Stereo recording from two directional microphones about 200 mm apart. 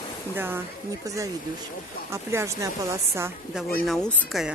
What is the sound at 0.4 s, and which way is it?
Speech, 10° right (ahead or behind).